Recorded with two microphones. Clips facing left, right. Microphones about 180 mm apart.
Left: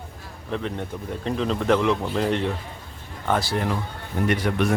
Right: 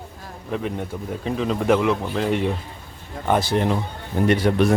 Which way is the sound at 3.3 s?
20° right (ahead or behind).